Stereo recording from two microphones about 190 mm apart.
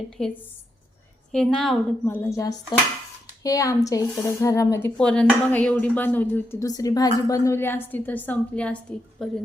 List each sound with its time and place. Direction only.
0.2 s a woman's voice: 5° left (ahead or behind)
2.0 s speech: 15° left (ahead or behind)